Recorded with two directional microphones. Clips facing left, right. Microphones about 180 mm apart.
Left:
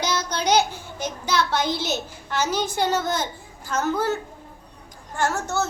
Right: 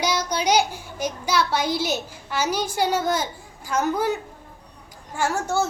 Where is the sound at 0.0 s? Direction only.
10° right (ahead or behind).